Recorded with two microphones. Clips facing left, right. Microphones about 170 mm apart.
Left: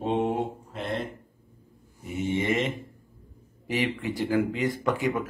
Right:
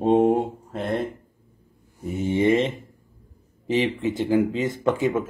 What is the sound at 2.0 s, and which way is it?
Speech, 35° right (ahead or behind).